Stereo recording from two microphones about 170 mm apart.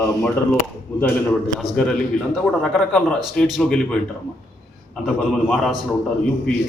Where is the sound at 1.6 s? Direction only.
Centre (ahead or behind).